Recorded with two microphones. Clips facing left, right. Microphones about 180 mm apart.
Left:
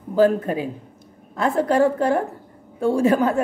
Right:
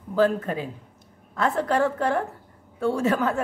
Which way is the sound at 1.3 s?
10° left (ahead or behind).